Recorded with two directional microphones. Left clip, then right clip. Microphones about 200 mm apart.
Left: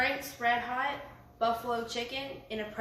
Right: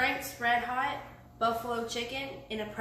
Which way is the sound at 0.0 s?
5° left (ahead or behind).